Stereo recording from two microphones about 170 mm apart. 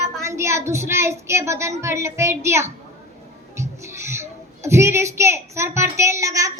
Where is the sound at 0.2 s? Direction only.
15° right (ahead or behind).